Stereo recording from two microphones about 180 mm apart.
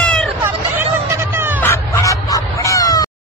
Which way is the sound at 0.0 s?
5° left (ahead or behind).